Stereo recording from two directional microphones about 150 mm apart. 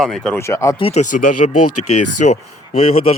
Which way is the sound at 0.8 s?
50° left (ahead or behind).